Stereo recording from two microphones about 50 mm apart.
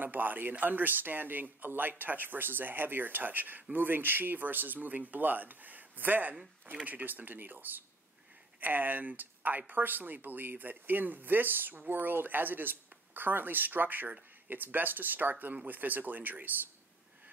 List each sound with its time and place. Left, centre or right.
0.0 s speech: right
6.6 s speech: right